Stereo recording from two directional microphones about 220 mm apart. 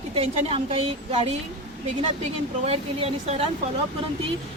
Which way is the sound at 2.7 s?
25° right (ahead or behind).